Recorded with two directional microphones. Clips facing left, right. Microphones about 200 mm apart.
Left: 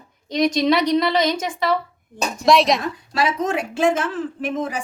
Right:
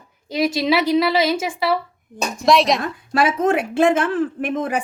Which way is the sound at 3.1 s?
55° right (ahead or behind).